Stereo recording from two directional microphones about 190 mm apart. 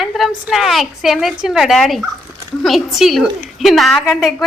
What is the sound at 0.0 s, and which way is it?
A woman's voice, centre (ahead or behind).